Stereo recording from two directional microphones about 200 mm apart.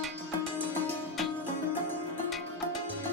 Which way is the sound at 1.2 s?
Centre (ahead or behind).